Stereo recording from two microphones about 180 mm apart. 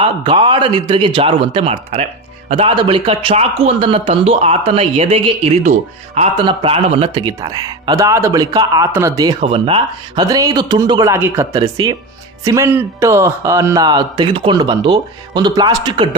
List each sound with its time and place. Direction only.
0.0 s a man's voice: 30° right (ahead or behind)
9.4 s a man's voice: 30° right (ahead or behind)